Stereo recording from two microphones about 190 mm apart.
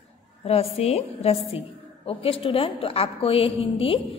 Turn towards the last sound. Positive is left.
turn(degrees=30)  # may be behind; listen again after turning